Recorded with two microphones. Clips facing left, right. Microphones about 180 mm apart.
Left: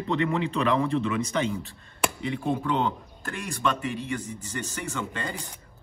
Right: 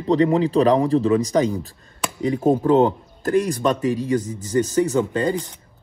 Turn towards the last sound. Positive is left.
turn(degrees=-35)  # may be behind; listen again after turning